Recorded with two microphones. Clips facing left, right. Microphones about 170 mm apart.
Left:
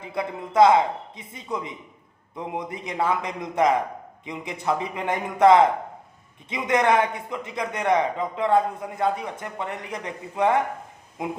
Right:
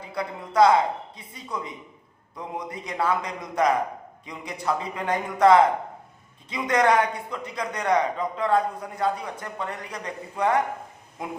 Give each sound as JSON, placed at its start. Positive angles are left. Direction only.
{"t": 0.0, "sound": "a man's voice", "side_deg": 20}